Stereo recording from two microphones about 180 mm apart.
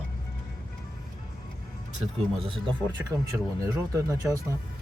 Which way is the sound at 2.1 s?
30° right (ahead or behind).